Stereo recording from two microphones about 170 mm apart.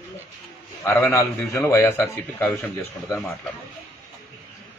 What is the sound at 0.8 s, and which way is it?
A man's voice, 10° left (ahead or behind).